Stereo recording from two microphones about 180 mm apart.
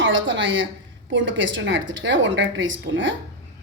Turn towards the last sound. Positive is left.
turn(degrees=-90)